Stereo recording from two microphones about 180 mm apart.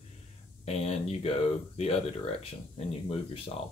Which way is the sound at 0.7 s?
35° left (ahead or behind).